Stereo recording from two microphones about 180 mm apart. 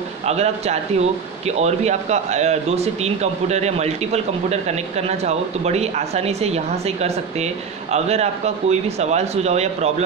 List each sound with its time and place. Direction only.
0.3 s speech: 35° right (ahead or behind)